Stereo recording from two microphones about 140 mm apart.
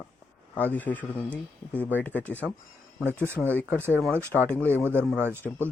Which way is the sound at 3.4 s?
10° left (ahead or behind).